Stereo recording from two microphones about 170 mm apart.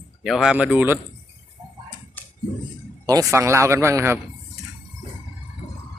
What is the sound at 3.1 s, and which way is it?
Speech, 20° right (ahead or behind).